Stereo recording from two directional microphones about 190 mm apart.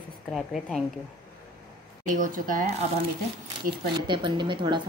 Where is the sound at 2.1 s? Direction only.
45° right (ahead or behind).